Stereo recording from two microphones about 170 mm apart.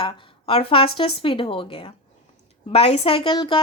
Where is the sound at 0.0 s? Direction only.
30° left (ahead or behind).